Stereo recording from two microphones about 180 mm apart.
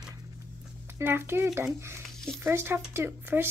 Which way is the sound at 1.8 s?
15° right (ahead or behind).